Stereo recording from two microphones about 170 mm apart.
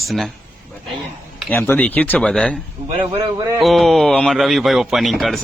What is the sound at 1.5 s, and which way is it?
Speech, 10° left (ahead or behind).